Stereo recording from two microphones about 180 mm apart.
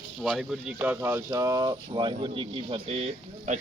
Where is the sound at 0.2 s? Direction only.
Centre (ahead or behind).